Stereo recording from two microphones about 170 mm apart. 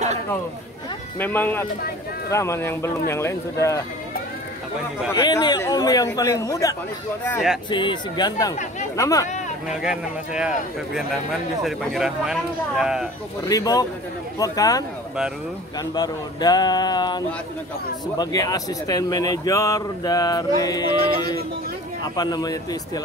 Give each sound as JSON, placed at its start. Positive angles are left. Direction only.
{"t": 1.2, "sound": "speech", "side_deg": 10}
{"t": 5.1, "sound": "speech", "side_deg": 25}
{"t": 9.7, "sound": "speech", "side_deg": -5}
{"t": 11.6, "sound": "speech", "side_deg": 0}
{"t": 13.5, "sound": "speech", "side_deg": 20}
{"t": 15.9, "sound": "speech", "side_deg": 25}